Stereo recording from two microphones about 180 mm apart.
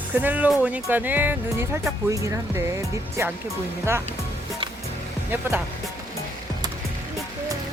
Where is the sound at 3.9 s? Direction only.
15° right (ahead or behind).